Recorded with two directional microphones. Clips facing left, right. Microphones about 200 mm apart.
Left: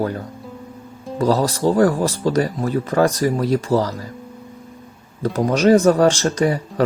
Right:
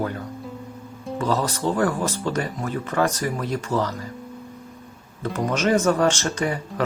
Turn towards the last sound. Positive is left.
turn(degrees=35)  # may be behind; listen again after turning